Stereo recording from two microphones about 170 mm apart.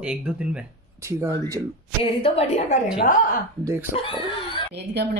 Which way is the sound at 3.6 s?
15° right (ahead or behind).